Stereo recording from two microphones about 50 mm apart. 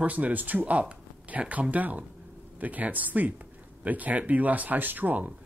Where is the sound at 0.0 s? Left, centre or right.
Right.